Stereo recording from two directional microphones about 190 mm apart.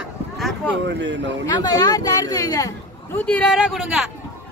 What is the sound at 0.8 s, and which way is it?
Speech, 70° right (ahead or behind).